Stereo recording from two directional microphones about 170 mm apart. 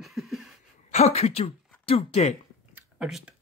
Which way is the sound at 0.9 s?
40° left (ahead or behind).